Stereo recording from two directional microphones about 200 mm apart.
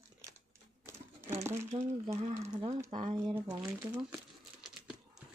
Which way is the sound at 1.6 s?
25° right (ahead or behind).